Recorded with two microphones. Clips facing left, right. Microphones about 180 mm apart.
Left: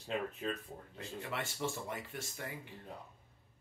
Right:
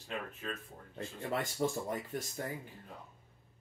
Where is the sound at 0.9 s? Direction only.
40° right (ahead or behind).